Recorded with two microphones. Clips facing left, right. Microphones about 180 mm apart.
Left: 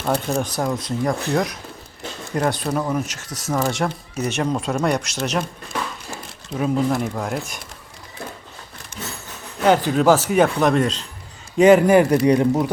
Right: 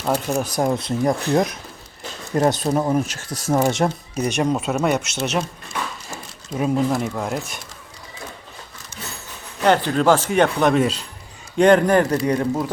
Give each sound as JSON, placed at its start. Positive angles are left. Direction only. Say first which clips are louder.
{"t": 0.1, "sound": "speech", "louder": "even", "side_deg": -5}
{"t": 0.6, "sound": "speech", "louder": "right 3 dB", "side_deg": -25}
{"t": 6.6, "sound": "speech", "louder": "even", "side_deg": -5}
{"t": 9.6, "sound": "speech", "louder": "left 1 dB", "side_deg": 5}